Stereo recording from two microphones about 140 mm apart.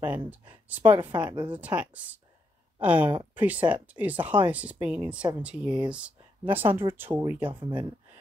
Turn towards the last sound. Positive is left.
turn(degrees=-35)  # may be behind; listen again after turning